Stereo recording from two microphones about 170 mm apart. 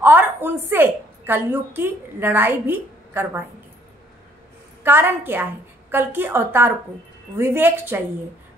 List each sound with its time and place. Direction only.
0.0 s a woman's voice: 10° right (ahead or behind)
4.8 s a woman's voice: 10° right (ahead or behind)